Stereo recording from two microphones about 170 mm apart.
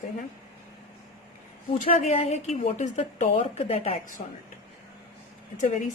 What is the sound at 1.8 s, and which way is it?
A woman's voice, 40° left (ahead or behind).